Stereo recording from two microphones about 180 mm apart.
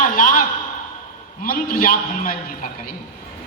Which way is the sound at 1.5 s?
50° left (ahead or behind).